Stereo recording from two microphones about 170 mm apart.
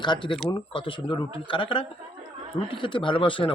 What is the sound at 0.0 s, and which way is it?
Speech, 25° left (ahead or behind).